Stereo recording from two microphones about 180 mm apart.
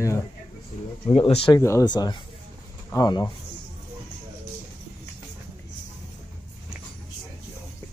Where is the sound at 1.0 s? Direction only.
30° left (ahead or behind).